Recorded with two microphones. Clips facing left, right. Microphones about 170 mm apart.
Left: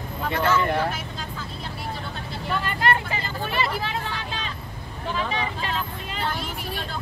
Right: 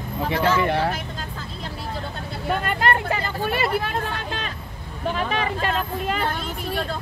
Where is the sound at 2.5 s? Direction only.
55° right (ahead or behind).